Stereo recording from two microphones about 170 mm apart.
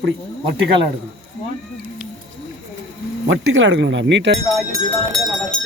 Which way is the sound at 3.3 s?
90° right.